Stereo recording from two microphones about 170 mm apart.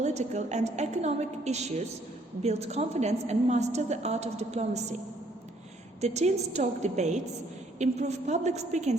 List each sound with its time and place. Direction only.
0.0 s a woman's voice: 40° right (ahead or behind)
6.0 s a woman's voice: 40° right (ahead or behind)